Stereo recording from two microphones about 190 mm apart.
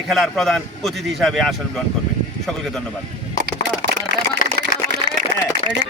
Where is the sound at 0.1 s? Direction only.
Centre (ahead or behind).